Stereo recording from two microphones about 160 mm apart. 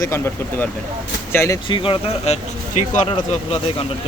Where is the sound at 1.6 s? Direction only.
30° left (ahead or behind).